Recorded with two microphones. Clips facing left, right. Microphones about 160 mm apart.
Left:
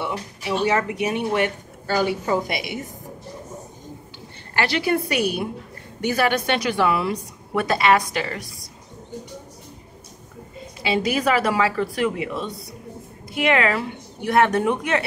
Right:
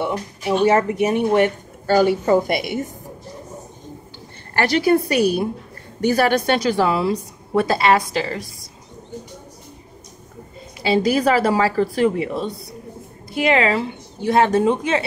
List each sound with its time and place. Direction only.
0.0 s speech: 50° right (ahead or behind)
4.6 s a woman's voice: 40° right (ahead or behind)
10.8 s a woman's voice: 35° right (ahead or behind)